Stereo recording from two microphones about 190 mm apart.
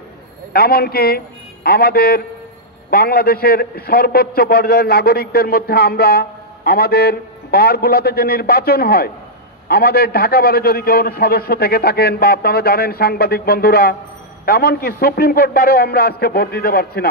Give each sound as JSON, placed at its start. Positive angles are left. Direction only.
{"t": 0.5, "sound": "a man's voice", "side_deg": 55}